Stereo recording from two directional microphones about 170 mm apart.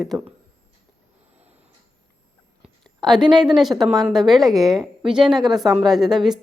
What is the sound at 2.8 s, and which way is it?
A woman's voice, centre (ahead or behind).